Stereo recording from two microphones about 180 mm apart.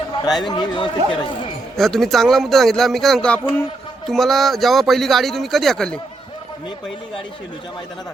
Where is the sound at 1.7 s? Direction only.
Centre (ahead or behind).